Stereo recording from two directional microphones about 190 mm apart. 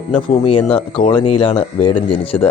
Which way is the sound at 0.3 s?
30° left (ahead or behind).